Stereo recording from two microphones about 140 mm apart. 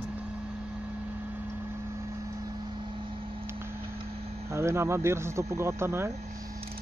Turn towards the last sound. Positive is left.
turn(degrees=-20)  # may be behind; listen again after turning